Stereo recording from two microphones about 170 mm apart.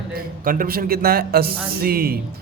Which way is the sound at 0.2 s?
55° right (ahead or behind).